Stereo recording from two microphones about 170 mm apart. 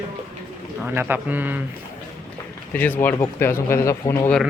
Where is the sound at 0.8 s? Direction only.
10° right (ahead or behind).